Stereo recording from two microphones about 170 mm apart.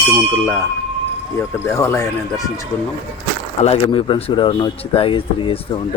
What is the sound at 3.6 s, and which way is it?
Speech, 35° left (ahead or behind).